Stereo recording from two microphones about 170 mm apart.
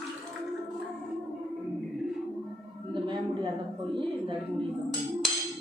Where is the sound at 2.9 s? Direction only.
25° right (ahead or behind).